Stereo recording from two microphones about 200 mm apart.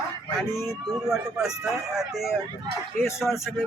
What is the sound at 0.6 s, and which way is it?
Speech, centre (ahead or behind).